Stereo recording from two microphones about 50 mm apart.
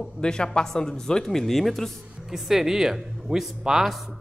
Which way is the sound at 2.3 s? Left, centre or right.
Centre.